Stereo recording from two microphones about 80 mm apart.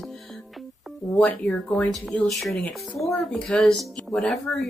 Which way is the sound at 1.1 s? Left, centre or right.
Centre.